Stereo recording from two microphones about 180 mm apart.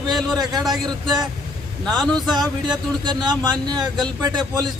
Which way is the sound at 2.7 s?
25° right (ahead or behind).